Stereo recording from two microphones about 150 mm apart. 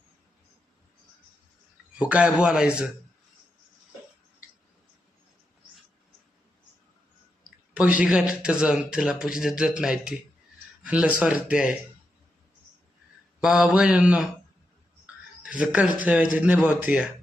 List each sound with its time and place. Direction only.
2.0 s speech: 10° right (ahead or behind)
7.7 s a man's voice: 10° right (ahead or behind)
13.4 s a man's voice: 5° right (ahead or behind)
15.0 s a sound: 10° right (ahead or behind)
16.0 s speech: 5° right (ahead or behind)